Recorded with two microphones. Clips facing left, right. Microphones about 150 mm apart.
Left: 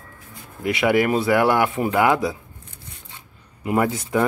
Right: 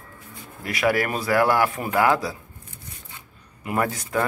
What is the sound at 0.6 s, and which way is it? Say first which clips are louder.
Speech: left 4 dB; 20° left (ahead or behind).